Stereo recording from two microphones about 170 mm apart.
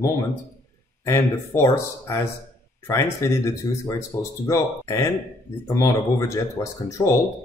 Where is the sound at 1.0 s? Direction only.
15° left (ahead or behind).